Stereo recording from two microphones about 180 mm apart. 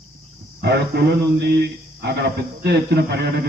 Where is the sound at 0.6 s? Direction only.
70° right (ahead or behind).